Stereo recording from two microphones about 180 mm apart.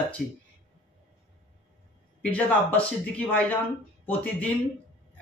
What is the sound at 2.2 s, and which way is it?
Speech, 10° left (ahead or behind).